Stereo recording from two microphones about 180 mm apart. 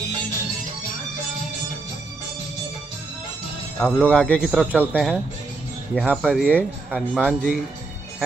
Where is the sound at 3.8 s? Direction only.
5° left (ahead or behind).